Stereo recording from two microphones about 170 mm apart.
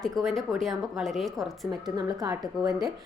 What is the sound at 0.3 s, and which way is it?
A woman's voice, centre (ahead or behind).